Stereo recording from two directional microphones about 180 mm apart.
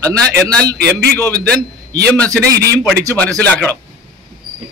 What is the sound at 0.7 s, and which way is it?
Speech, 65° right (ahead or behind).